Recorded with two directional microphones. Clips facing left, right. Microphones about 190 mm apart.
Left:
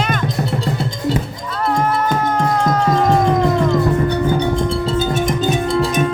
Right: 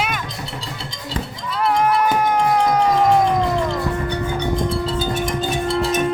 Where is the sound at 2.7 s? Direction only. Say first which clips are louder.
Left 1 dB; 10° right (ahead or behind).